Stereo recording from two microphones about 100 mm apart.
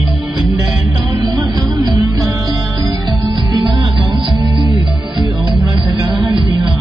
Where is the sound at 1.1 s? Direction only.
40° right (ahead or behind).